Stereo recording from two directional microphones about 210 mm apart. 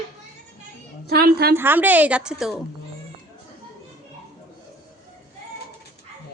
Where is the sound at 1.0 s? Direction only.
50° right (ahead or behind).